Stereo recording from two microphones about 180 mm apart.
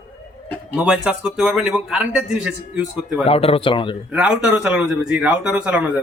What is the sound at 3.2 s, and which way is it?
Speech, 30° left (ahead or behind).